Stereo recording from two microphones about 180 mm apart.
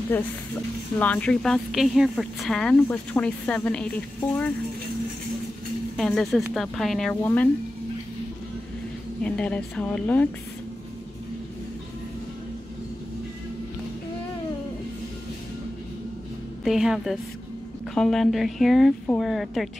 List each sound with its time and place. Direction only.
0.1 s a woman's voice: 10° left (ahead or behind)
5.9 s a woman's voice: centre (ahead or behind)
9.2 s a woman's voice: 5° left (ahead or behind)
16.6 s a woman's voice: centre (ahead or behind)